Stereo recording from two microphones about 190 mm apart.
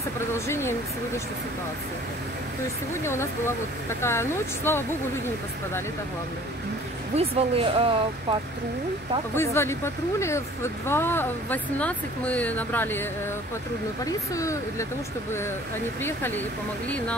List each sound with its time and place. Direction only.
0.5 s speech: 15° left (ahead or behind)
2.9 s speech: 15° left (ahead or behind)
7.2 s speech: 30° right (ahead or behind)
9.3 s speech: 15° left (ahead or behind)
14.3 s speech: 15° left (ahead or behind)
16.0 s speech: 10° left (ahead or behind)